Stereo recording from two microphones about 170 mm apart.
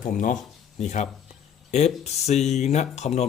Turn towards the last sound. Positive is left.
turn(degrees=40)  # may be behind; listen again after turning